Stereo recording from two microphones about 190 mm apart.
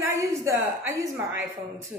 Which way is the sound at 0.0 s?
15° right (ahead or behind).